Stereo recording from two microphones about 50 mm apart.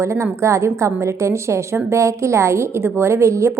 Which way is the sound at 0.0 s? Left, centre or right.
Right.